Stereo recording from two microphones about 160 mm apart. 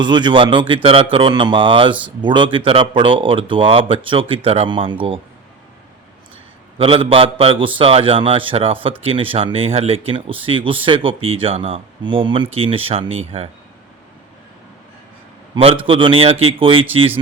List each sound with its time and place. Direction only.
0.0 s a man's voice: 30° right (ahead or behind)
6.7 s a man's voice: 35° right (ahead or behind)
15.5 s a man's voice: 35° right (ahead or behind)